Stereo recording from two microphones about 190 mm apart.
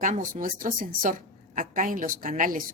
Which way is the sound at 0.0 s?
40° right (ahead or behind).